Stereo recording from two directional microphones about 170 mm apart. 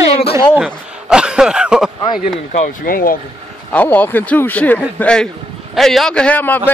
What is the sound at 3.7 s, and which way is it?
A man's voice, 10° left (ahead or behind).